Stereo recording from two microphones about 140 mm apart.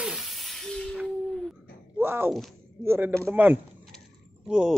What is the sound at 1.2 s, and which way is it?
Dog, 5° left (ahead or behind).